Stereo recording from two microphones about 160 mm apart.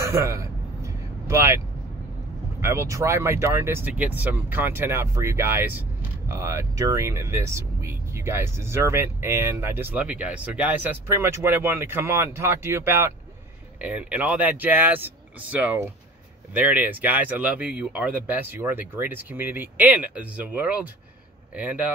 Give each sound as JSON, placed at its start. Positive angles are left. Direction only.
{"t": 0.0, "sound": "vehicle", "side_deg": -20}
{"t": 2.6, "sound": "speech", "side_deg": -15}